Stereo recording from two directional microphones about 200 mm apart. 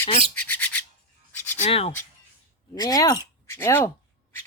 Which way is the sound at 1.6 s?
30° left (ahead or behind).